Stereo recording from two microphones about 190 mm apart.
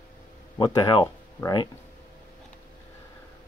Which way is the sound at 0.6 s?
20° left (ahead or behind).